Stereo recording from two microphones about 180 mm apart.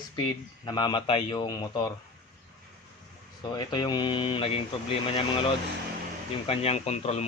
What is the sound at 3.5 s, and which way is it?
Speech, 25° left (ahead or behind).